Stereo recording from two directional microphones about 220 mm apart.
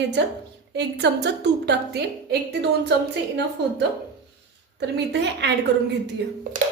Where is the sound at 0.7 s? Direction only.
50° right (ahead or behind).